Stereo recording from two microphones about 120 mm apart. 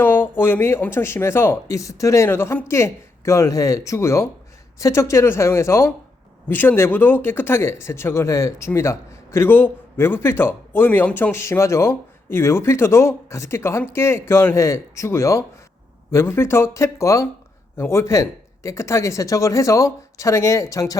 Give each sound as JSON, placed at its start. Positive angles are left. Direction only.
{"t": 0.0, "sound": "speech", "side_deg": 15}